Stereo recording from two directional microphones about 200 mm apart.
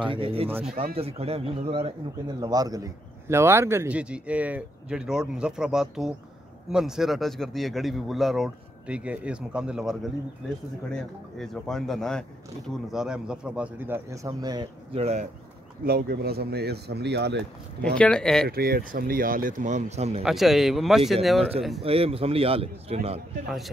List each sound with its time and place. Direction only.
0.0 s a man's voice: 25° right (ahead or behind)
2.4 s a man's voice: 20° right (ahead or behind)
15.0 s speech: 30° right (ahead or behind)
15.8 s speech: 50° right (ahead or behind)
17.8 s speech: 5° left (ahead or behind)
18.5 s speech: 50° right (ahead or behind); by 20.2 s 30° right (ahead or behind)
20.2 s speech: centre (ahead or behind)
21.4 s a man's voice: 30° right (ahead or behind)